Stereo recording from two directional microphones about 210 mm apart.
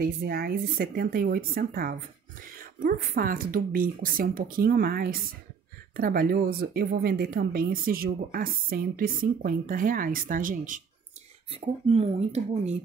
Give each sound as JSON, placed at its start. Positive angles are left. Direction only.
{"t": 0.0, "sound": "speech", "side_deg": -45}
{"t": 11.5, "sound": "speech", "side_deg": -30}